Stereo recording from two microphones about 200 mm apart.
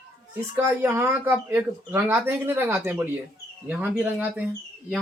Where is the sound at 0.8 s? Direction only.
10° right (ahead or behind).